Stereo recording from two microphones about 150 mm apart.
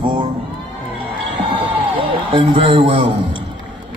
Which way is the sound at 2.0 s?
35° right (ahead or behind).